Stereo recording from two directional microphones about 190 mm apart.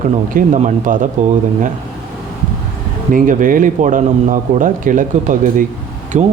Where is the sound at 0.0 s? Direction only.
40° right (ahead or behind).